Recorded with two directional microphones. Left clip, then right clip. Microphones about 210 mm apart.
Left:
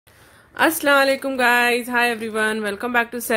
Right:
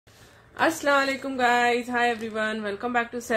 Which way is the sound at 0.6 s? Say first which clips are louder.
Left 6 dB; 40° left (ahead or behind).